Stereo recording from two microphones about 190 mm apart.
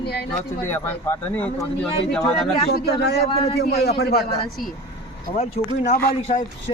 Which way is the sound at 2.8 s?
60° left (ahead or behind).